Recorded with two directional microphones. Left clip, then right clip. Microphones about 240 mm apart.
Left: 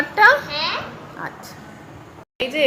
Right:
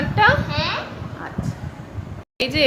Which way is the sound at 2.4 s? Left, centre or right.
Right.